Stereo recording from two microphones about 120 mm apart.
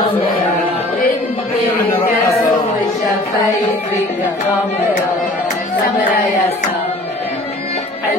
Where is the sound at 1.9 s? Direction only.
20° left (ahead or behind).